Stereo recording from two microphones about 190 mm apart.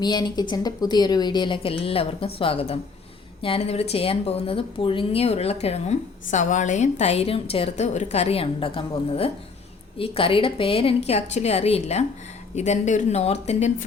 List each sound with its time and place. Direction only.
0.0 s a woman's voice: 20° left (ahead or behind); by 13.8 s 35° left (ahead or behind)